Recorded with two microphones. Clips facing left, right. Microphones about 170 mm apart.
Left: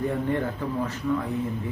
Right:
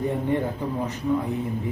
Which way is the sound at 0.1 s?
15° right (ahead or behind).